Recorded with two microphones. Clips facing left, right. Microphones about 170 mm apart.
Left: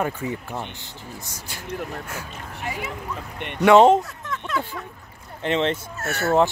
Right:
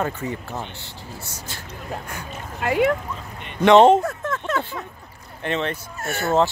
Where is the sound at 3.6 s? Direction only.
5° left (ahead or behind).